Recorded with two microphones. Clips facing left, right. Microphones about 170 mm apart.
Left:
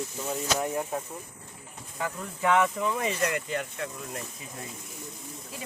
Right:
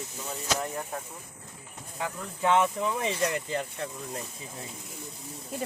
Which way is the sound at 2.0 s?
20° right (ahead or behind).